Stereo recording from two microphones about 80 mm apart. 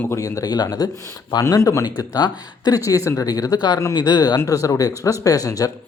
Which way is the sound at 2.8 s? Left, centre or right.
Left.